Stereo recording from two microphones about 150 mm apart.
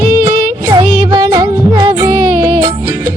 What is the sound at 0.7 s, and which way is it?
Music, 30° right (ahead or behind).